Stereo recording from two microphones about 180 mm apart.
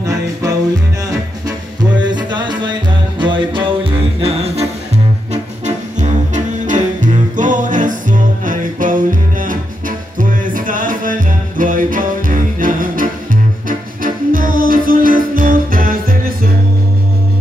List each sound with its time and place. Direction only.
0.0 s music: 20° right (ahead or behind)
1.8 s music: 25° right (ahead or behind); by 16.3 s 55° right (ahead or behind)